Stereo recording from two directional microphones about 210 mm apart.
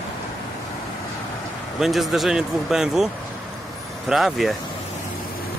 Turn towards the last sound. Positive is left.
turn(degrees=0)  # may be behind; listen again after turning